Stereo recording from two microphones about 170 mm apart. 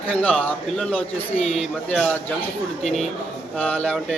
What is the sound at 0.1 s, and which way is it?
A man's voice, 5° left (ahead or behind).